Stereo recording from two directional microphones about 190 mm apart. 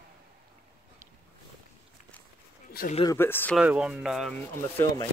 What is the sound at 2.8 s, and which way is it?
Speech, 55° left (ahead or behind).